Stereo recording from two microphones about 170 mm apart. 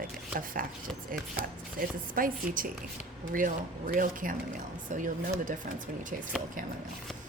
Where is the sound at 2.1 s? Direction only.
55° right (ahead or behind).